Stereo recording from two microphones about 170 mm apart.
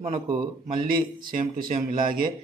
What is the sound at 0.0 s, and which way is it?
Speech, 35° right (ahead or behind).